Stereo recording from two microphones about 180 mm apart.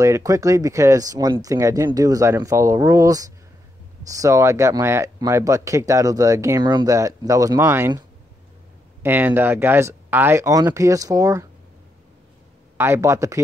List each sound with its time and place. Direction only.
0.0 s speech: 15° right (ahead or behind)
9.0 s speech: 10° right (ahead or behind)
12.7 s speech: 15° right (ahead or behind)